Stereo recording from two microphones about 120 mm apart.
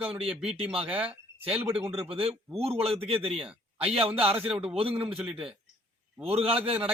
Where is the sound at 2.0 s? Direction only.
55° right (ahead or behind).